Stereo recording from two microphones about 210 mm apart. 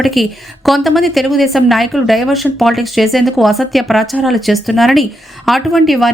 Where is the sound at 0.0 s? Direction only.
Centre (ahead or behind).